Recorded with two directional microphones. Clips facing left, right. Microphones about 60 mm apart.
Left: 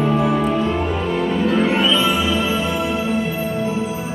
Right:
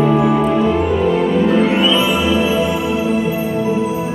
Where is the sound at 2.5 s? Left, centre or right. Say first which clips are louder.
Right 4 dB; centre.